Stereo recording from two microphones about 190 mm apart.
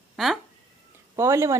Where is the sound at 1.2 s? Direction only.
15° right (ahead or behind).